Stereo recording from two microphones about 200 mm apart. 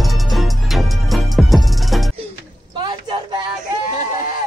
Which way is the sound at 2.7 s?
20° right (ahead or behind).